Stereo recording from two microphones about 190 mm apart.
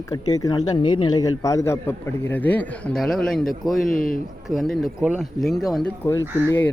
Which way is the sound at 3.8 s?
45° left (ahead or behind).